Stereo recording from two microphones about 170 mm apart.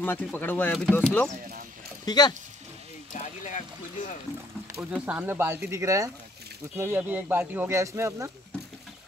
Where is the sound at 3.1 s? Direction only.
45° left (ahead or behind).